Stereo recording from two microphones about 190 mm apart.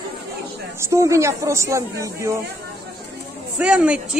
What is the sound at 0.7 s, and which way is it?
Speech, 15° right (ahead or behind).